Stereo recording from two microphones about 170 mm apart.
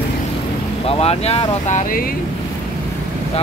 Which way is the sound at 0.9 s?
35° left (ahead or behind).